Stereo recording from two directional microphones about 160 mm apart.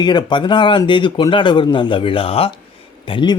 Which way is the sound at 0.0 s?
25° left (ahead or behind).